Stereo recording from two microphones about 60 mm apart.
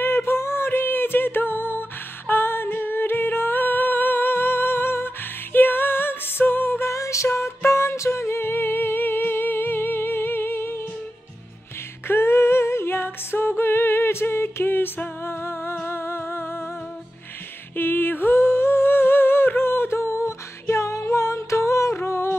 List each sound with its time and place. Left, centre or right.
0.0 s music: left
6.9 s music: left
7.2 s music: left
12.1 s a capella: left
15.2 s music: left
17.7 s humming: left
21.9 s humming: left